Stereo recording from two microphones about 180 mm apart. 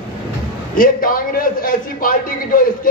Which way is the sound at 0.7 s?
50° left (ahead or behind).